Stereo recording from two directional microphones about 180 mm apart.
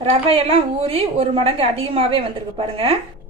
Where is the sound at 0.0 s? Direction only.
30° right (ahead or behind).